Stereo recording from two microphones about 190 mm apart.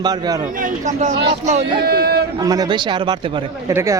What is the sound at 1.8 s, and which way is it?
Speech, 55° right (ahead or behind).